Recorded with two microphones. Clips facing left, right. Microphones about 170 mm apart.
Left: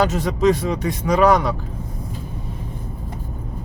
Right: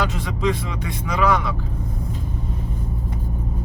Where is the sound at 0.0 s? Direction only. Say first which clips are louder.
Left 6 dB; 40° left (ahead or behind).